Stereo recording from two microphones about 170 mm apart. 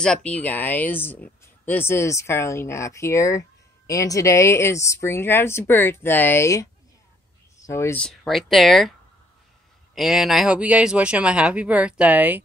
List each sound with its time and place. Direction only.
0.0 s speech: 5° left (ahead or behind)
8.0 s speech: 5° left (ahead or behind)
9.9 s speech: centre (ahead or behind)